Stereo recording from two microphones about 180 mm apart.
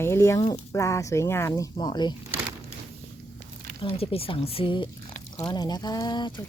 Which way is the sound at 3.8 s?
35° left (ahead or behind).